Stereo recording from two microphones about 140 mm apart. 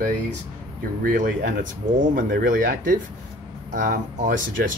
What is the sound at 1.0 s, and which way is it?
Speech, 70° right (ahead or behind).